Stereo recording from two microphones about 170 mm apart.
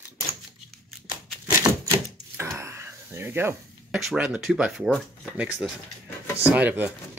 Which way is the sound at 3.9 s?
5° right (ahead or behind).